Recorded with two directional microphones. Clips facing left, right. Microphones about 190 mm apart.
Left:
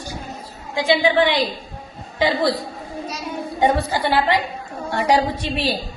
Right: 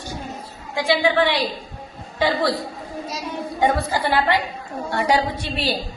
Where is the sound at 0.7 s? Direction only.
20° left (ahead or behind).